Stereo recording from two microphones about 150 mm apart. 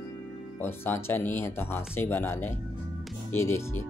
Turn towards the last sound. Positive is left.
turn(degrees=15)  # may be behind; listen again after turning